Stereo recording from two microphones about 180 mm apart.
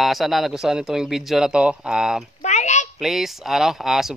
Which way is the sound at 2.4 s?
40° left (ahead or behind).